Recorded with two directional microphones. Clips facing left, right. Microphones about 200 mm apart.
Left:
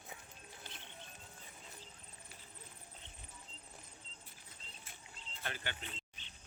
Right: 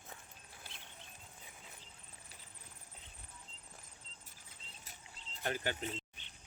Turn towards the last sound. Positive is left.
turn(degrees=-40)  # may be behind; listen again after turning